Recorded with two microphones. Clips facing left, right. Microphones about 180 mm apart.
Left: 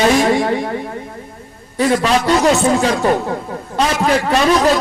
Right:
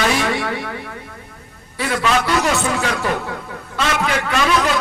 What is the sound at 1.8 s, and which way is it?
A man's voice, 35° left (ahead or behind).